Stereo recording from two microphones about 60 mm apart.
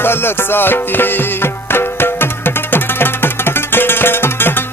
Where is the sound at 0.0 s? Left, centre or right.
Left.